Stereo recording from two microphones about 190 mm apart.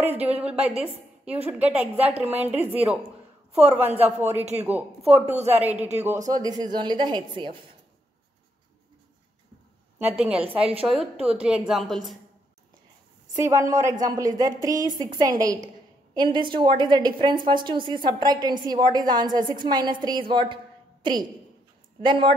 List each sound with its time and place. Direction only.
0.0 s a woman's voice: 10° right (ahead or behind)
5.2 s a woman's voice: 35° right (ahead or behind)
5.5 s a woman's voice: 10° right (ahead or behind)
6.2 s a woman's voice: 20° right (ahead or behind)
9.9 s a woman's voice: 5° right (ahead or behind)
13.4 s a woman's voice: 15° right (ahead or behind)